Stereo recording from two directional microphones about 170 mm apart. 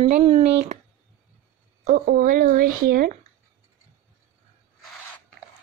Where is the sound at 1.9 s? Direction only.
55° right (ahead or behind).